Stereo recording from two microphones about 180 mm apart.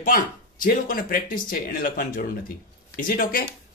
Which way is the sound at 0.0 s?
50° left (ahead or behind).